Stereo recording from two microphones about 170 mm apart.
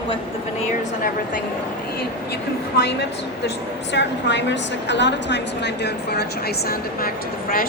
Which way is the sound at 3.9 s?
90° left.